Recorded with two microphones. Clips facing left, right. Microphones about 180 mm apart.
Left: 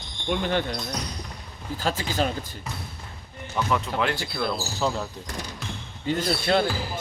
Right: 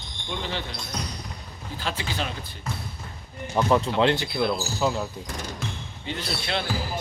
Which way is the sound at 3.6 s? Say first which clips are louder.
Right 4 dB; 35° right (ahead or behind).